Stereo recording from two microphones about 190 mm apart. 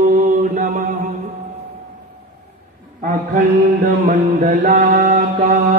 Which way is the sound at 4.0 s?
40° right (ahead or behind).